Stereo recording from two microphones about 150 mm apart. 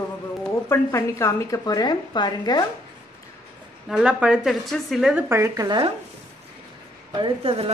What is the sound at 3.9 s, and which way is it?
Speech, 5° right (ahead or behind).